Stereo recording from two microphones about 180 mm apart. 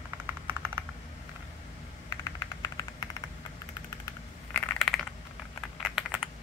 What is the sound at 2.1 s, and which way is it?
Vehicle, 20° left (ahead or behind).